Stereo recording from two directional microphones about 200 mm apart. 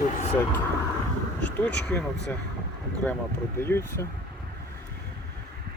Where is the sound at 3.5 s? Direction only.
10° left (ahead or behind).